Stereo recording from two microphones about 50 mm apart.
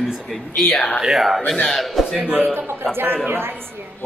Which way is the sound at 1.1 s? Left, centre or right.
Centre.